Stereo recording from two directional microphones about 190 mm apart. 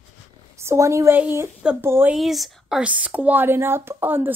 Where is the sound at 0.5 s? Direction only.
15° right (ahead or behind).